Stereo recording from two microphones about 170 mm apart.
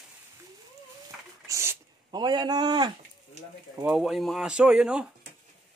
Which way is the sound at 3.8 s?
5° right (ahead or behind).